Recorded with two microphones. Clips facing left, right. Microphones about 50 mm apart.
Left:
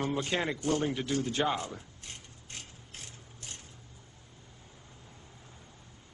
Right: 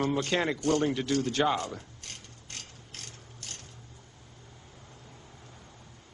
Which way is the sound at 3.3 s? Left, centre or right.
Left.